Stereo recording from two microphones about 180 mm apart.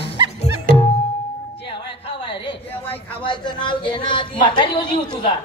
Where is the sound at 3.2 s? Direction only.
25° left (ahead or behind).